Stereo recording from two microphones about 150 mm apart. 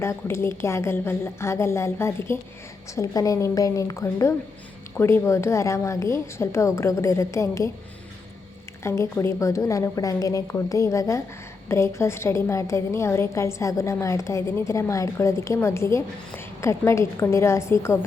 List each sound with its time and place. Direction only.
0.0 s a woman's voice: 15° left (ahead or behind)
8.8 s a woman's voice: 15° left (ahead or behind)